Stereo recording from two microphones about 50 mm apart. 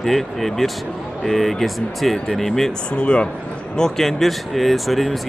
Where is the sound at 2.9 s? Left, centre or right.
Left.